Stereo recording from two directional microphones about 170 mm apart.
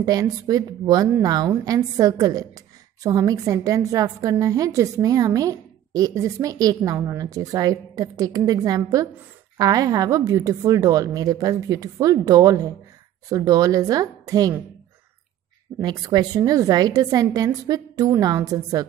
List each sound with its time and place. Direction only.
0.0 s a woman's voice: 20° right (ahead or behind)
15.8 s a woman's voice: 25° right (ahead or behind)